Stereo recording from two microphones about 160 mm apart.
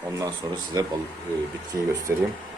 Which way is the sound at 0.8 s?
25° right (ahead or behind).